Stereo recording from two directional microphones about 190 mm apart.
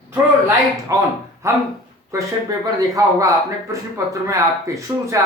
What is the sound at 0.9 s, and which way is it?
Speech, 15° right (ahead or behind).